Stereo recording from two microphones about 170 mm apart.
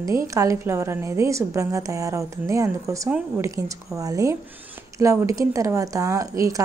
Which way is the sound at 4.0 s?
20° right (ahead or behind).